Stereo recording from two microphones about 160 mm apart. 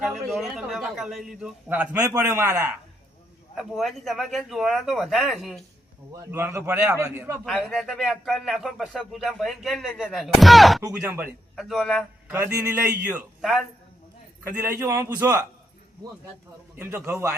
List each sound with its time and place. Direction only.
0.0 s a man's voice: centre (ahead or behind); by 2.6 s 15° right (ahead or behind)
3.6 s speech: centre (ahead or behind)
6.1 s a man's voice: 15° right (ahead or behind)
7.4 s speech: 5° left (ahead or behind)
11.0 s a man's voice: 10° right (ahead or behind)
11.5 s speech: centre (ahead or behind)
12.3 s a man's voice: 15° right (ahead or behind); by 13.7 s centre (ahead or behind)
14.5 s a man's voice: 15° right (ahead or behind)
16.7 s a man's voice: 15° right (ahead or behind)